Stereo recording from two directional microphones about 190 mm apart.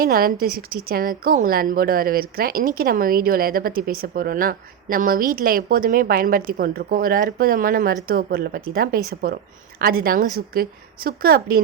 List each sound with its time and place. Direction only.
0.0 s a woman's voice: 50° right (ahead or behind)